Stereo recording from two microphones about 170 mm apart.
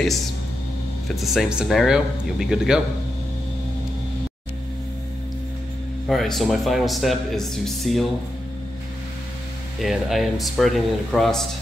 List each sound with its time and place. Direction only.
1.0 s speech: centre (ahead or behind)
6.0 s speech: centre (ahead or behind)
9.8 s speech: centre (ahead or behind)